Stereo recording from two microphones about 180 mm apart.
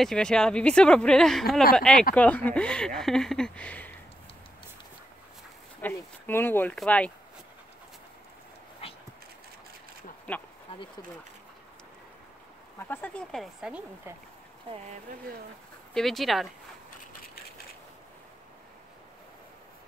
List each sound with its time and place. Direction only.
0.0 s speech: 5° left (ahead or behind)
5.8 s speech: 10° left (ahead or behind)
8.8 s dog: 30° left (ahead or behind)
10.7 s a sound: 30° left (ahead or behind)
12.7 s speech: 10° left (ahead or behind); by 14.1 s 5° right (ahead or behind)
15.9 s speech: centre (ahead or behind)